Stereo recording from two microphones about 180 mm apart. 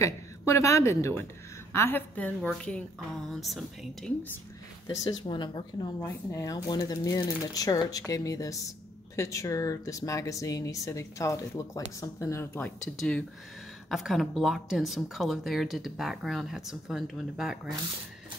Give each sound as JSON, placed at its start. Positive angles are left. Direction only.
{"t": 0.0, "sound": "a woman's voice", "side_deg": 15}
{"t": 4.8, "sound": "a woman's voice", "side_deg": 20}